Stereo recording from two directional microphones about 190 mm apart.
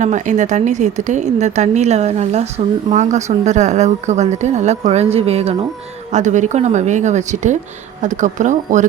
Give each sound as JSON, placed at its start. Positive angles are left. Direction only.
{"t": 0.0, "sound": "a woman's voice", "side_deg": -40}